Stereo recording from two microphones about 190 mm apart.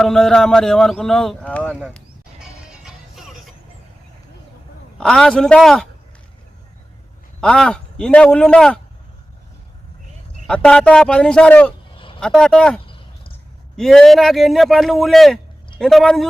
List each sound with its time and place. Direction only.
0.0 s a man's voice: 5° left (ahead or behind)
2.4 s music: 5° right (ahead or behind)
4.9 s a man's voice: 5° left (ahead or behind)
7.4 s a man's voice: 5° left (ahead or behind)
10.4 s a man's voice: 5° left (ahead or behind)
11.9 s vehicle: 25° left (ahead or behind)
12.2 s a man's voice: 5° left (ahead or behind)